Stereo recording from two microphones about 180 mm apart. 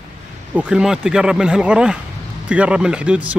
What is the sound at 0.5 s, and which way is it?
Speech, 5° right (ahead or behind).